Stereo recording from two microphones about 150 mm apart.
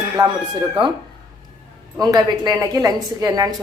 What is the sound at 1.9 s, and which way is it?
A woman's voice, 25° right (ahead or behind).